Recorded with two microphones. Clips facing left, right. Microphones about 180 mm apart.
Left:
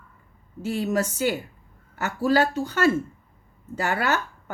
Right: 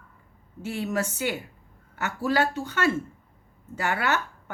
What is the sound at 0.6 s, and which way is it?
Speech, 35° left (ahead or behind).